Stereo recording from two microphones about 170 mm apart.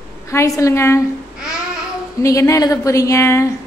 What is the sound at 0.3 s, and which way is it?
Speech, 15° left (ahead or behind).